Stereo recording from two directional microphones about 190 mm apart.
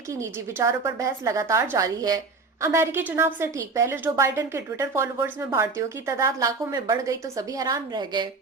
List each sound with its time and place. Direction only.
0.1 s a woman's voice: 15° right (ahead or behind)